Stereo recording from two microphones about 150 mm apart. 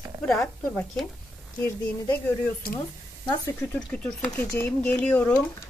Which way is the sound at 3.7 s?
10° left (ahead or behind).